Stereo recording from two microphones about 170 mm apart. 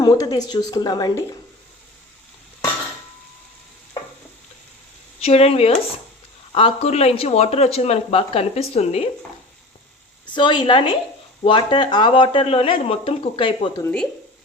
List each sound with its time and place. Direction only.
0.0 s speech: 20° left (ahead or behind)
5.2 s speech: 35° left (ahead or behind)
10.2 s speech: 30° left (ahead or behind)
13.8 s speech: 5° left (ahead or behind)